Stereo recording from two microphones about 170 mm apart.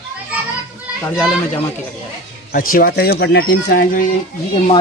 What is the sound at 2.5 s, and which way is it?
Speech, 60° left (ahead or behind).